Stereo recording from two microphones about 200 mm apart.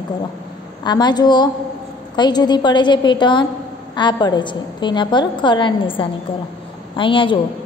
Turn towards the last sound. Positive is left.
turn(degrees=25)  # may be behind; listen again after turning